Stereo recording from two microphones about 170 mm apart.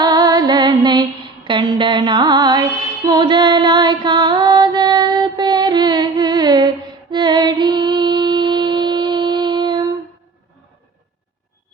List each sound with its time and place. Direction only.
0.0 s music: 25° right (ahead or behind)